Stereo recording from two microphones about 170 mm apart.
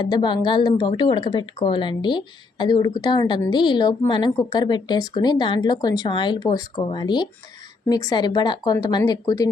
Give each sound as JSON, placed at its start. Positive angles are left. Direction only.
{"t": 0.0, "sound": "a woman's voice", "side_deg": 25}